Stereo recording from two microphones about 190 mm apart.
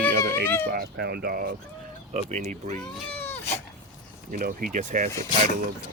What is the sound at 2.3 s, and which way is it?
Speech, 40° right (ahead or behind).